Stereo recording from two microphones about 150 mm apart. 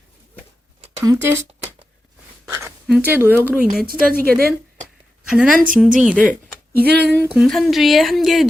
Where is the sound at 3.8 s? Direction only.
75° right (ahead or behind).